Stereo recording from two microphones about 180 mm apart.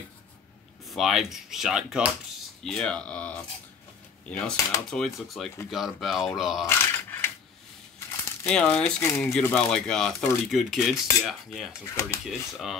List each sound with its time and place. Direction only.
0.8 s speech: centre (ahead or behind)
6.7 s a sound: 10° left (ahead or behind)
8.5 s speech: 5° left (ahead or behind)
11.9 s speech: 15° left (ahead or behind)
12.3 s speech: centre (ahead or behind)